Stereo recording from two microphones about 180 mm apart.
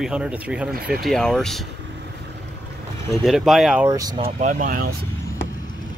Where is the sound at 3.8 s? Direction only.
20° right (ahead or behind).